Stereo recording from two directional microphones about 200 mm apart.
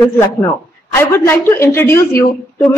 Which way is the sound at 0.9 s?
15° left (ahead or behind).